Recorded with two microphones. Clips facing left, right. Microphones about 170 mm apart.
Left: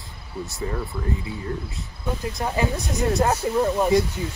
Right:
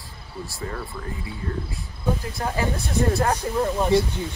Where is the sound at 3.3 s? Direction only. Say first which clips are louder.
Left 2 dB; 5° left (ahead or behind).